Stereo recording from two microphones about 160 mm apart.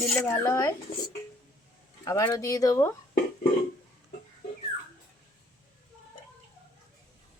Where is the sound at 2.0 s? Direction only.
20° left (ahead or behind).